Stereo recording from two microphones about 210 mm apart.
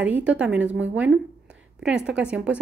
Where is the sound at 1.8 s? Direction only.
5° right (ahead or behind).